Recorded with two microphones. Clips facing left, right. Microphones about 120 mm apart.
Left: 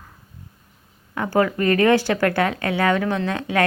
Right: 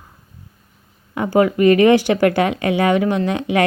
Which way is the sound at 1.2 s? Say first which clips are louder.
Right 5 dB; 20° right (ahead or behind).